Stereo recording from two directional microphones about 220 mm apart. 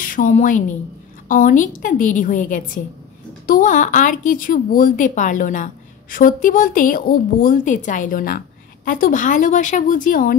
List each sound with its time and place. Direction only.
0.0 s a woman's voice: 40° left (ahead or behind)